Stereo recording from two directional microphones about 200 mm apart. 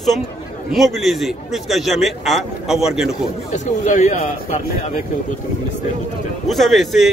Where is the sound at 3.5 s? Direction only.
35° left (ahead or behind).